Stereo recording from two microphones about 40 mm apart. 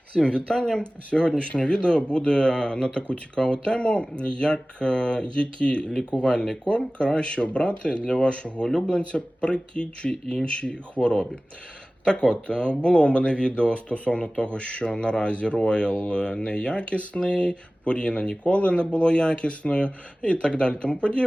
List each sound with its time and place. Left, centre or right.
0.1 s speech: left
6.1 s speech: centre
6.7 s speech: left
8.6 s speech: centre
9.0 s speech: left